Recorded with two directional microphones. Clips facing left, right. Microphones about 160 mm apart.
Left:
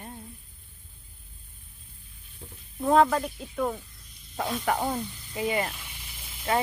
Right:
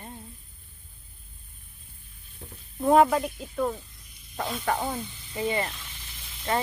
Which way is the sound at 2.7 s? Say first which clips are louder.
Right 2 dB; 15° right (ahead or behind).